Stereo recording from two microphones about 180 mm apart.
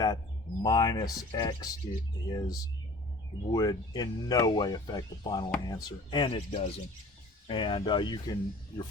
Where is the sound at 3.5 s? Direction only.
20° left (ahead or behind).